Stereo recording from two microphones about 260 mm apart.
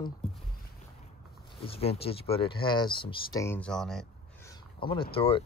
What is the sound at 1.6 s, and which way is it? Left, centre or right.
Speech, left.